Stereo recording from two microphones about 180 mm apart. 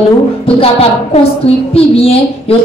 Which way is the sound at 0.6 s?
35° left (ahead or behind).